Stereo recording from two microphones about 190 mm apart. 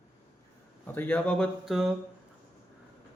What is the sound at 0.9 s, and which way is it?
Speech, 10° left (ahead or behind).